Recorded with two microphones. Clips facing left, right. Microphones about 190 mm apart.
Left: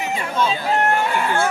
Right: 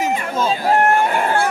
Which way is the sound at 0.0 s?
45° right (ahead or behind).